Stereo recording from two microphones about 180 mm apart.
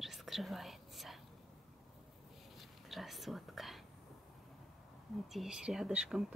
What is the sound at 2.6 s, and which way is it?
Whispering, centre (ahead or behind).